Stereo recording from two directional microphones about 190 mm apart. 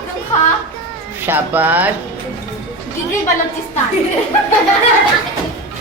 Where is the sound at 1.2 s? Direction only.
10° right (ahead or behind).